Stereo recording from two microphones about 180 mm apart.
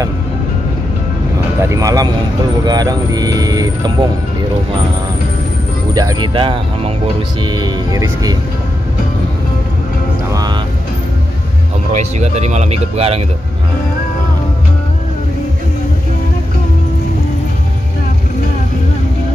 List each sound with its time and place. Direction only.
1.6 s speech: 15° right (ahead or behind)
5.9 s speech: 20° right (ahead or behind)
10.3 s music: 20° right (ahead or behind)
11.9 s speech: 40° right (ahead or behind)